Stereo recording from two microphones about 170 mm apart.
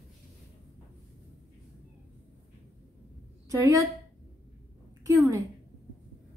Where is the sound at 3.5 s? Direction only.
20° right (ahead or behind).